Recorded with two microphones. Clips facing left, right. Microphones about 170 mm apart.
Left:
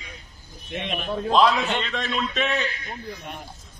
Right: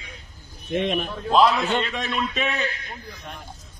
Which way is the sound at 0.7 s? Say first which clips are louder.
Right 7 dB; 50° right (ahead or behind).